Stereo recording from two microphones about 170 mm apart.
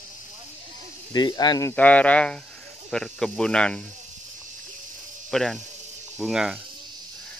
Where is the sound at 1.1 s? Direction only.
25° left (ahead or behind).